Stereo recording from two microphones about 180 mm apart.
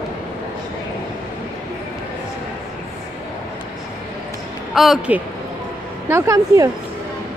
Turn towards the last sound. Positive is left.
turn(degrees=-15)  # may be behind; listen again after turning